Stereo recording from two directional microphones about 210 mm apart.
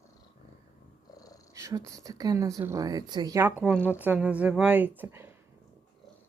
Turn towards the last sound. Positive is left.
turn(degrees=-10)  # may be behind; listen again after turning